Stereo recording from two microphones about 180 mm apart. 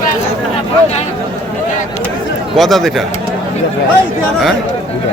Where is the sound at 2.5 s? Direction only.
Centre (ahead or behind).